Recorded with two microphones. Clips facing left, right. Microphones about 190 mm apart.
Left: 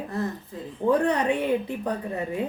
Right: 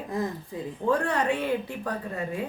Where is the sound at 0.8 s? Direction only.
20° left (ahead or behind).